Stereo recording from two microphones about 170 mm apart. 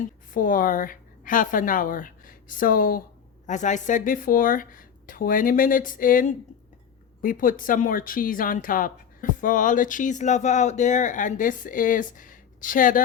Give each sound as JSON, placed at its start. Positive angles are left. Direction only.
{"t": 0.3, "sound": "a woman's voice", "side_deg": 55}